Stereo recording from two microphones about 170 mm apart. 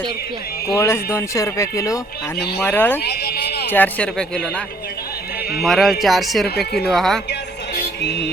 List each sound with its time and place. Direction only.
0.7 s speech: 15° left (ahead or behind)
3.0 s a sound: 70° left (ahead or behind)
3.7 s speech: 10° left (ahead or behind)
5.6 s speech: centre (ahead or behind)